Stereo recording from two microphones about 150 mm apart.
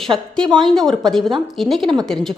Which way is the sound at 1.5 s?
Centre (ahead or behind).